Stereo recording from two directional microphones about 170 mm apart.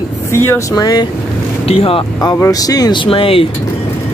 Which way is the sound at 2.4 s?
20° left (ahead or behind).